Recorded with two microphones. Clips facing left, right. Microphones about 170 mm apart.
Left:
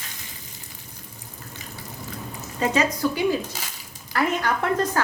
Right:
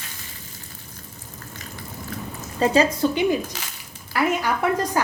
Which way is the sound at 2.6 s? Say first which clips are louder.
Right 4 dB; 30° right (ahead or behind).